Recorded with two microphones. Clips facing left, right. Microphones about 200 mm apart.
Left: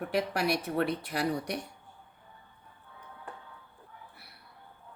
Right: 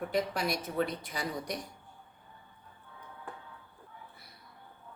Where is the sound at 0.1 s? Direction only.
65° left (ahead or behind).